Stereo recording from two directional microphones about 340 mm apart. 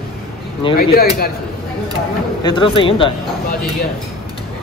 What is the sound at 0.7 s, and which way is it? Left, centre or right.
Speech, left.